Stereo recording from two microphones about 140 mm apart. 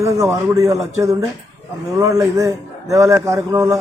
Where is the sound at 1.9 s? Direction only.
25° right (ahead or behind).